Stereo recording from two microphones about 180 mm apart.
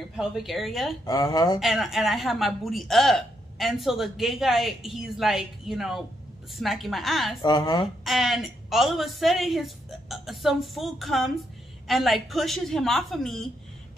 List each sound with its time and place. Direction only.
0.1 s a woman's voice: centre (ahead or behind)
1.0 s speech: 20° left (ahead or behind)
1.6 s a woman's voice: centre (ahead or behind)
7.4 s speech: 25° left (ahead or behind)
8.0 s a woman's voice: centre (ahead or behind)